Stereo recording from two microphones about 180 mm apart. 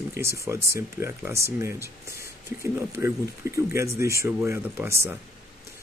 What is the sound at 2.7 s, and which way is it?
Speech, 15° right (ahead or behind).